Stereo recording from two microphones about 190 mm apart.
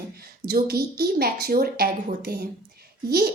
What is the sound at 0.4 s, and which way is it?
A woman's voice, 55° right (ahead or behind).